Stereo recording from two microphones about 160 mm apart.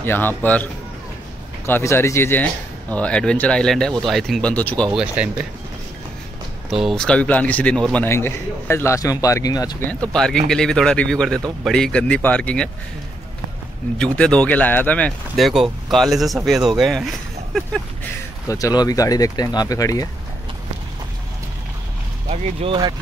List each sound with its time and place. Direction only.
0.0 s speech: 15° left (ahead or behind)
1.7 s speech: 15° left (ahead or behind)
4.9 s speech: 5° right (ahead or behind)
6.7 s a man's voice: centre (ahead or behind); by 9.8 s 25° left (ahead or behind)
10.1 s speech: 5° left (ahead or behind)
13.9 s speech: 5° left (ahead or behind)
18.5 s a man's voice: 25° left (ahead or behind)
22.3 s speech: 35° right (ahead or behind)